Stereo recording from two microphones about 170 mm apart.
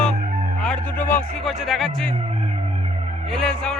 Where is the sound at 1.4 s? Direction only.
Centre (ahead or behind).